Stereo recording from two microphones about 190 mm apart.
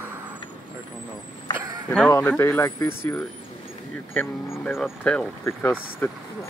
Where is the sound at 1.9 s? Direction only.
10° left (ahead or behind).